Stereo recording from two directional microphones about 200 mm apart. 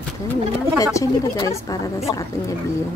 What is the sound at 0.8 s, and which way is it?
Speech, 15° left (ahead or behind).